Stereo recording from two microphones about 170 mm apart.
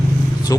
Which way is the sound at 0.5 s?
20° left (ahead or behind).